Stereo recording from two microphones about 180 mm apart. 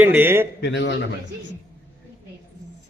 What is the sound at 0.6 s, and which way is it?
Speech, 80° left.